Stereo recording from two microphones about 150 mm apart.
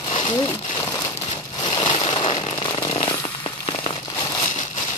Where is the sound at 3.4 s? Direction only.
35° left (ahead or behind).